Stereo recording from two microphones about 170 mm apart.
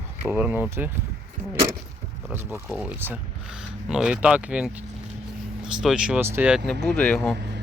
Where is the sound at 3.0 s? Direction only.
10° right (ahead or behind).